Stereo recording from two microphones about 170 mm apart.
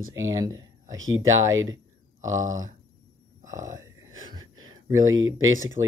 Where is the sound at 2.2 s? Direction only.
45° right (ahead or behind).